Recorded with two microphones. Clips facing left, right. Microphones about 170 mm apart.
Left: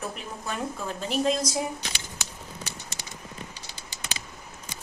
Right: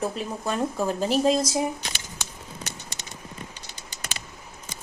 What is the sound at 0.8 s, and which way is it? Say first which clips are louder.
Speech: right 4 dB; 35° right (ahead or behind).